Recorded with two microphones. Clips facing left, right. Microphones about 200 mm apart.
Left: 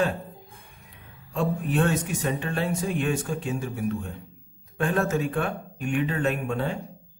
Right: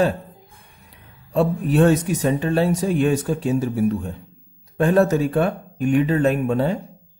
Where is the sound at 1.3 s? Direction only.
35° right (ahead or behind).